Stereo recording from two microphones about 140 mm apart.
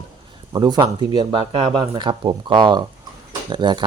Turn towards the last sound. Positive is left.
turn(degrees=-35)  # may be behind; listen again after turning